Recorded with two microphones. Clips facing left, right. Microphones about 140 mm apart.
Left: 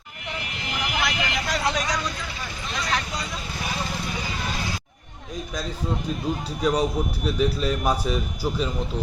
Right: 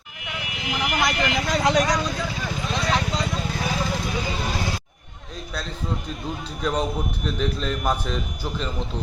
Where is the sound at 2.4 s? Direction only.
90° right.